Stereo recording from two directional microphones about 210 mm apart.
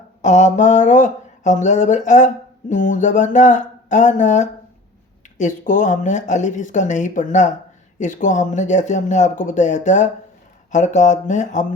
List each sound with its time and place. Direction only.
0.2 s speech: 35° left (ahead or behind)